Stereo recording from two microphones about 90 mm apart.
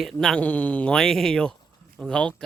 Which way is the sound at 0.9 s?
5° left (ahead or behind).